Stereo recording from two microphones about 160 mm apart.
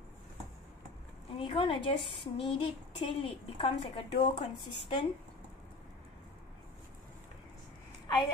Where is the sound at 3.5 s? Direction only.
35° left (ahead or behind).